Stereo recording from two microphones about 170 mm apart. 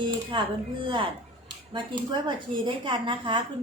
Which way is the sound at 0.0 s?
30° right (ahead or behind).